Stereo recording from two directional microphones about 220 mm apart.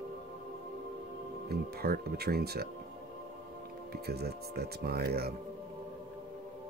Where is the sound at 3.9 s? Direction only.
45° right (ahead or behind).